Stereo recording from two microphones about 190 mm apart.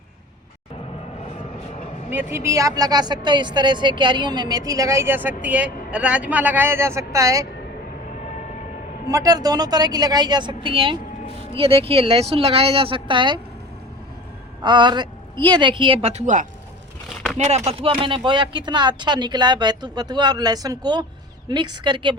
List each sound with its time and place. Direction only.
2.3 s a woman's voice: 15° right (ahead or behind)
9.0 s a woman's voice: 20° right (ahead or behind)
14.6 s a woman's voice: 25° right (ahead or behind)